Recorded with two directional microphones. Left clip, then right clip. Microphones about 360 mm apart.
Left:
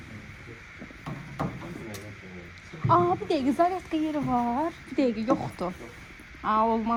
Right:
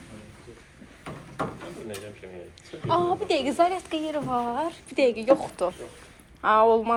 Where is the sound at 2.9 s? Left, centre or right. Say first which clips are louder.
Left 1 dB; centre.